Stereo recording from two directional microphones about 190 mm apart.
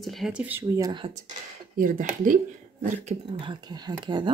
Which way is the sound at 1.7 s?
45° right (ahead or behind).